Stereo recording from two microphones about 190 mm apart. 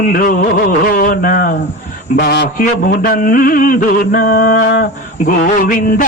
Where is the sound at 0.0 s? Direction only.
45° left (ahead or behind).